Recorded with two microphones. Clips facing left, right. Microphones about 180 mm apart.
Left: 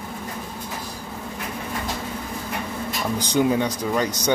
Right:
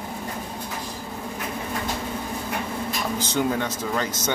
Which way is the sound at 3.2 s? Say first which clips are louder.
Left 5 dB; 15° left (ahead or behind).